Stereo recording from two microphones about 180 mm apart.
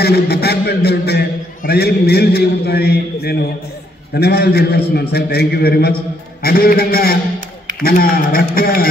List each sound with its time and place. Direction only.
0.0 s a man's voice: 60° left (ahead or behind)